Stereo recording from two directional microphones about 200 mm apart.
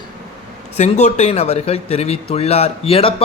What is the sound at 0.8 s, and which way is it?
Speech, 35° left (ahead or behind).